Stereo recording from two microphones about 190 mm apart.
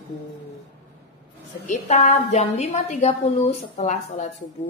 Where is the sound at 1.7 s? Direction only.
45° left (ahead or behind).